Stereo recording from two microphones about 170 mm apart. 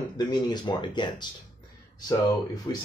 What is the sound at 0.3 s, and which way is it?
Speech, 25° left (ahead or behind).